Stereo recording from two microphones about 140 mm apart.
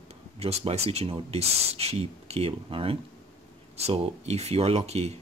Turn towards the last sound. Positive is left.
turn(degrees=-50)  # may be behind; listen again after turning